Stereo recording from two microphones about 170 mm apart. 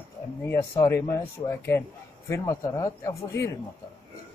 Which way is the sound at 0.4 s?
15° left (ahead or behind).